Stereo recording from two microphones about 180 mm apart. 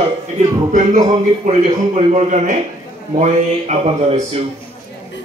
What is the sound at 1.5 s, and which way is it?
A man's voice, 40° right (ahead or behind).